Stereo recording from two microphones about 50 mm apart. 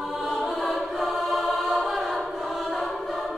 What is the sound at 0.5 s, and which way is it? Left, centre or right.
Choir, centre.